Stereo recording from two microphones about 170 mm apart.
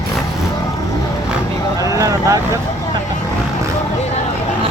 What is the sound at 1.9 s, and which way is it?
Vehicle, 20° right (ahead or behind).